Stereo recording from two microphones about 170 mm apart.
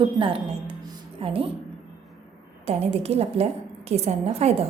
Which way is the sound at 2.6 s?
35° right (ahead or behind).